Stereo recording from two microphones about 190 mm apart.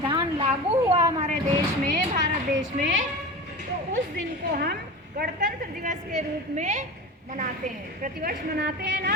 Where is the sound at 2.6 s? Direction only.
85° right.